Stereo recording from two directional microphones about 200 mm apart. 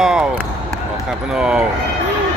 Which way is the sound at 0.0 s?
5° right (ahead or behind).